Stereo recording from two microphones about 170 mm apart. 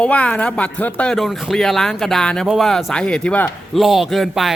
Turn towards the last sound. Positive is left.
turn(degrees=0)  # may be behind; listen again after turning